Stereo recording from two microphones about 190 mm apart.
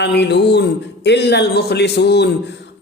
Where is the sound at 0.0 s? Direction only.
65° left (ahead or behind).